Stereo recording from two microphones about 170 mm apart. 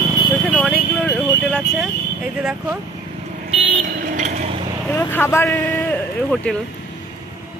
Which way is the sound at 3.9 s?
55° right (ahead or behind).